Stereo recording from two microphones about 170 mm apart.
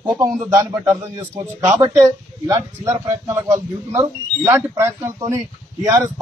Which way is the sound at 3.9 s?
15° right (ahead or behind).